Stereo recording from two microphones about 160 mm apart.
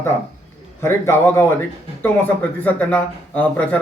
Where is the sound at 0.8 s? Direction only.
15° left (ahead or behind).